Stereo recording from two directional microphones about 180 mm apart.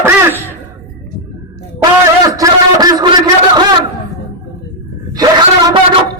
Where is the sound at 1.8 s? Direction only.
20° right (ahead or behind).